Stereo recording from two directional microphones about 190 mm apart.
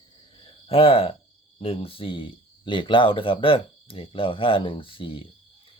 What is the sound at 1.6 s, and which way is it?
Speech, 30° left (ahead or behind).